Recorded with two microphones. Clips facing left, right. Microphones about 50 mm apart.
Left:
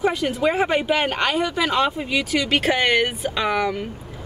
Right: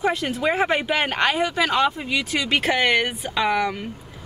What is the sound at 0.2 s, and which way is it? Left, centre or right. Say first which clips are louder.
A woman's voice: left 2 dB; centre.